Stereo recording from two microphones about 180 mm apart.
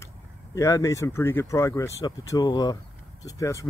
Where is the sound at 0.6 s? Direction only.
15° left (ahead or behind).